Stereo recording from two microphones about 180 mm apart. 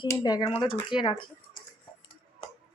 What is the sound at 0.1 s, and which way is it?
Speech, 20° left (ahead or behind).